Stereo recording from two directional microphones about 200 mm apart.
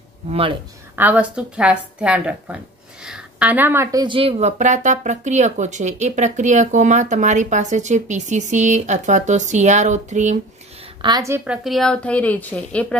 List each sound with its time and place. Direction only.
0.3 s speech: 30° right (ahead or behind)
0.9 s a woman's voice: 5° right (ahead or behind); by 10.3 s 35° right (ahead or behind)
11.0 s a woman's voice: 20° right (ahead or behind); by 12.8 s 5° left (ahead or behind)